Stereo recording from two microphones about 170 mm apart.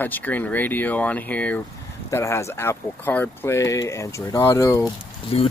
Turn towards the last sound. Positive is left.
turn(degrees=35)  # may be behind; listen again after turning